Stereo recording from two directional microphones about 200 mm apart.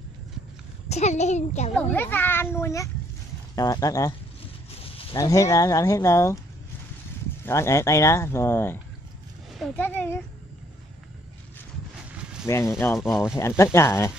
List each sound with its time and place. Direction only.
0.8 s a child's voice: 35° left (ahead or behind)
1.8 s speech: 10° left (ahead or behind)
5.1 s speech: 15° left (ahead or behind)
7.4 s speech: 15° left (ahead or behind)
9.8 s speech: 10° left (ahead or behind)
12.4 s speech: 15° left (ahead or behind)